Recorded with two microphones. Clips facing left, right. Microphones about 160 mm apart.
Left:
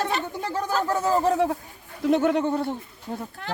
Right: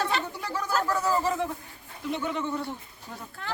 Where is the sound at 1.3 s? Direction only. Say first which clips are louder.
Left 7 dB; 65° left (ahead or behind).